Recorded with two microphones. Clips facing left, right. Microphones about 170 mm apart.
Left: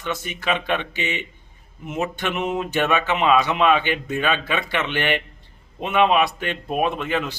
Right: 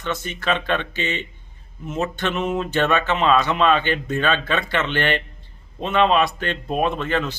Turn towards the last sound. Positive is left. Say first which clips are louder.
# right 1 dB
turn(degrees=10)  # may be behind; listen again after turning